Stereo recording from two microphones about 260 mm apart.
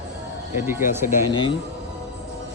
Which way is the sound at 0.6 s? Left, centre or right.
Centre.